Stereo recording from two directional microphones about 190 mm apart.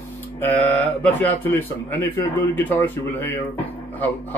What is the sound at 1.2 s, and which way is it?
Speech, 10° left (ahead or behind).